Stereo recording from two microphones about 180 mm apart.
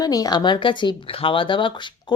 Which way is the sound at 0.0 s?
20° left (ahead or behind).